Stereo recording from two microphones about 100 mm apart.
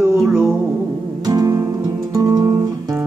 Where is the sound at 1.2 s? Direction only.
40° right (ahead or behind).